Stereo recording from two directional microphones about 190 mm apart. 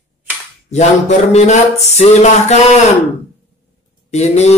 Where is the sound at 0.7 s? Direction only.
35° left (ahead or behind).